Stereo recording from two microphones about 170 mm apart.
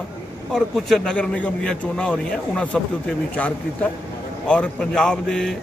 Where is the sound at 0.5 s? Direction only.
Centre (ahead or behind).